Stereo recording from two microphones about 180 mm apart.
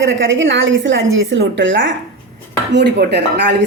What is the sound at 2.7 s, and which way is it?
Speech, 70° right (ahead or behind).